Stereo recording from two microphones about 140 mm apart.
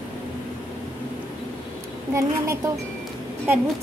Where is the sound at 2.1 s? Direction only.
20° right (ahead or behind).